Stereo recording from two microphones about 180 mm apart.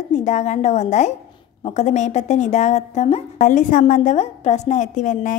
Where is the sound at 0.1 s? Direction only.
40° left (ahead or behind).